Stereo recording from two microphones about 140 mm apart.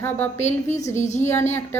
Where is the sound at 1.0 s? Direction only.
55° left (ahead or behind).